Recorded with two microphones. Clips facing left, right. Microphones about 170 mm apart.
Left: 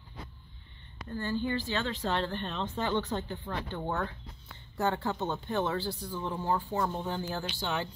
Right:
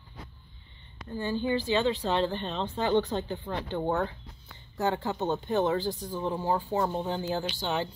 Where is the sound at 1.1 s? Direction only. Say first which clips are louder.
Right 3 dB; 15° right (ahead or behind).